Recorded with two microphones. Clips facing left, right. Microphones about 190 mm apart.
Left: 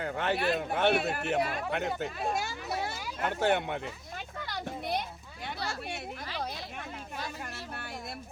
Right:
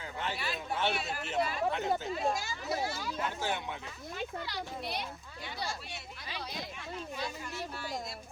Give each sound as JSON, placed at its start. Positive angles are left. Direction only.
{"t": 0.0, "sound": "speech", "side_deg": 60}
{"t": 4.4, "sound": "a child's voice", "side_deg": 50}
{"t": 7.2, "sound": "speech", "side_deg": 55}